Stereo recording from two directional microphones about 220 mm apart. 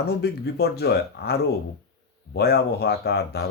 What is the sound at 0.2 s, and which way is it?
Speech, 50° left (ahead or behind).